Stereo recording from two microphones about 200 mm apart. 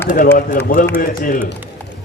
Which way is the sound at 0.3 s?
45° left (ahead or behind).